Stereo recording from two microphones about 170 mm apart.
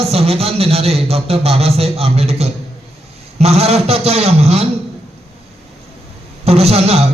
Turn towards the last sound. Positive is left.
turn(degrees=-35)  # may be behind; listen again after turning